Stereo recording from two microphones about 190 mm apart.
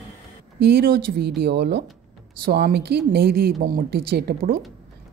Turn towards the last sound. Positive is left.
turn(degrees=-55)  # may be behind; listen again after turning